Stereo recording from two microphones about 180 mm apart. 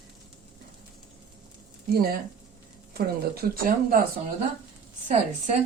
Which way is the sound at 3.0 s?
55° right (ahead or behind).